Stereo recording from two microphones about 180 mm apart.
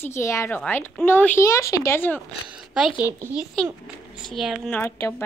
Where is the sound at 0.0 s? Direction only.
15° left (ahead or behind).